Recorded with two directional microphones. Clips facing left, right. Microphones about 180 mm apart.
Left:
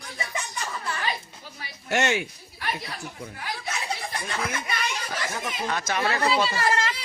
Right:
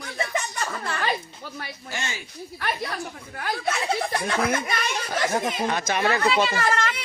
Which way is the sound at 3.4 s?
55° right (ahead or behind).